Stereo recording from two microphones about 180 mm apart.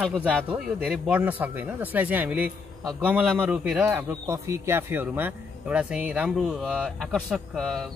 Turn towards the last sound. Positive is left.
turn(degrees=0)  # may be behind; listen again after turning